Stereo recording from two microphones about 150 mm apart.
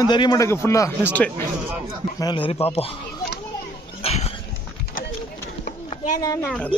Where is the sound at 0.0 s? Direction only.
30° left (ahead or behind); by 1.3 s 15° left (ahead or behind).